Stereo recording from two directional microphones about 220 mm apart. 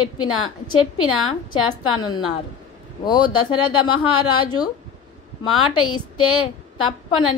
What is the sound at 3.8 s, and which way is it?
Speech, 85° left.